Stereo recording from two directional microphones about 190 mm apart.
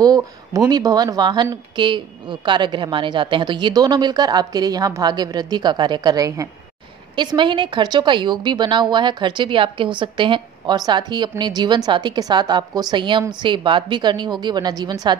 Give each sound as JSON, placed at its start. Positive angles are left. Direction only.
{"t": 0.0, "sound": "a woman's voice", "side_deg": -20}